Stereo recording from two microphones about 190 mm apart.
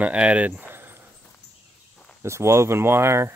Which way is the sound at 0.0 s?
5° right (ahead or behind).